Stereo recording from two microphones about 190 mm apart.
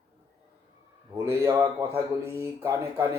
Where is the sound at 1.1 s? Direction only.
15° right (ahead or behind).